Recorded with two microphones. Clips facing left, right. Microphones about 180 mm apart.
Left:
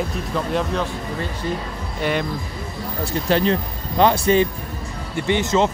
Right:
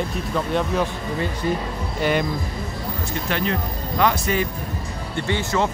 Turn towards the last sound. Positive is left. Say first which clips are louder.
# left 4 dB
turn(degrees=20)  # may be behind; listen again after turning